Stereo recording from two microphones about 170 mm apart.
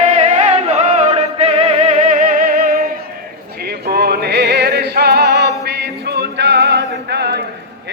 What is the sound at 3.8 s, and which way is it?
Music, 70° right (ahead or behind).